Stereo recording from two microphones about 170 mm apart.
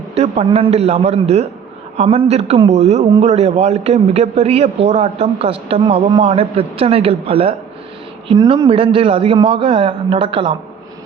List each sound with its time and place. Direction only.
0.1 s a man's voice: 40° right (ahead or behind)